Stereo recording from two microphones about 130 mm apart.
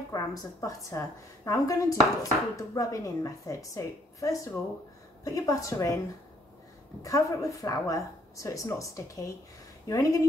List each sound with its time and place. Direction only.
0.1 s speech: 30° left (ahead or behind)
7.0 s speech: 25° left (ahead or behind)